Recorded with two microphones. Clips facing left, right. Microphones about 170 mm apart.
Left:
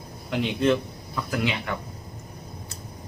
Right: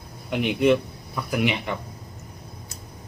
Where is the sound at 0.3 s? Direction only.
15° right (ahead or behind).